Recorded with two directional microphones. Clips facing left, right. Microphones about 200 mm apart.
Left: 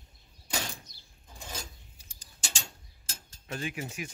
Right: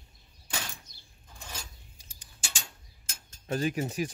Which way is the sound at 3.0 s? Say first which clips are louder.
Left 2 dB; 35° left (ahead or behind).